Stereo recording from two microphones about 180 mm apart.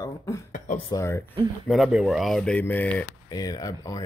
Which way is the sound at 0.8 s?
15° left (ahead or behind).